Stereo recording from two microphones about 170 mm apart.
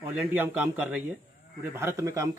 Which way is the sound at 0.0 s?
10° right (ahead or behind).